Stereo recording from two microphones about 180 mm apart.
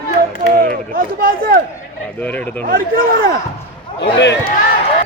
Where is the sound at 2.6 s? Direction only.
55° right (ahead or behind).